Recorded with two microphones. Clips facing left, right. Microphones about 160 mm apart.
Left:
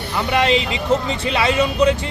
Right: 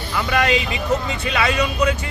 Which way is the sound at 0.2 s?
25° left (ahead or behind).